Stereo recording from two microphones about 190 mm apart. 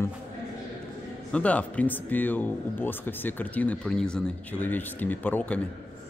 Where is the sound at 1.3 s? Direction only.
5° left (ahead or behind).